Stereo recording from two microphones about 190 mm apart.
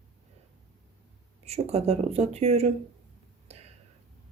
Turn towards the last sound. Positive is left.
turn(degrees=-35)  # may be behind; listen again after turning